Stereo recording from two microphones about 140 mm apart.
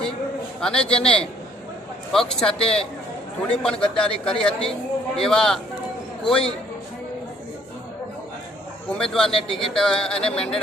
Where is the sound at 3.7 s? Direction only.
40° left (ahead or behind).